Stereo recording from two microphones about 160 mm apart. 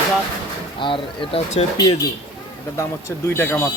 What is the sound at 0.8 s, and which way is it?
Speech, 30° left (ahead or behind).